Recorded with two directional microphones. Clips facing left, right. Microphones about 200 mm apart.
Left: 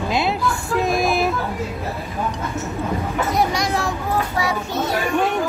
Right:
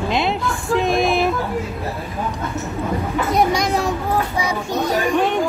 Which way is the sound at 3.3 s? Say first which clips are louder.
Right 4 dB; 20° right (ahead or behind).